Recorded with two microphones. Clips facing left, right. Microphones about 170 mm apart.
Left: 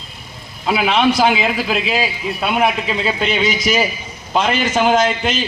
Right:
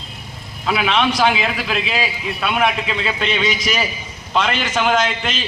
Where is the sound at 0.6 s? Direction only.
30° left (ahead or behind).